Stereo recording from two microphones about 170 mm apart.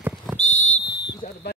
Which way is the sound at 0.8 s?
80° left.